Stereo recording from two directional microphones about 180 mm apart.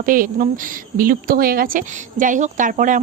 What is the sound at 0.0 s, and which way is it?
A woman's voice, 50° right (ahead or behind).